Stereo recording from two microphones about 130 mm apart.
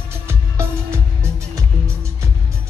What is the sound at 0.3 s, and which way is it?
Music, 20° right (ahead or behind).